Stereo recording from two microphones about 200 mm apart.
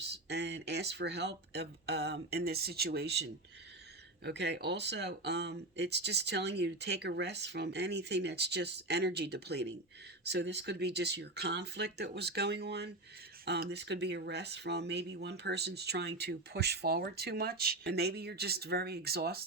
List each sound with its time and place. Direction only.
0.3 s speech: 55° right (ahead or behind)